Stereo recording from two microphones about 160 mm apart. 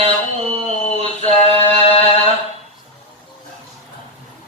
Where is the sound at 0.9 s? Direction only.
40° right (ahead or behind).